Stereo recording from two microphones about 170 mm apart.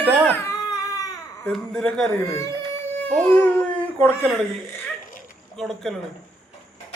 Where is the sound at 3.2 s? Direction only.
5° left (ahead or behind).